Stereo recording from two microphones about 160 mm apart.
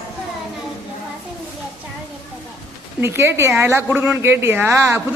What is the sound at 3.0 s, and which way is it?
Speech, 15° right (ahead or behind).